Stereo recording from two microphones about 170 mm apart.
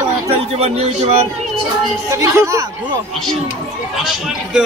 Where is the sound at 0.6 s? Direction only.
35° right (ahead or behind).